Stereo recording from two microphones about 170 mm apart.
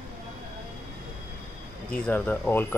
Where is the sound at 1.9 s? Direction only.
10° left (ahead or behind).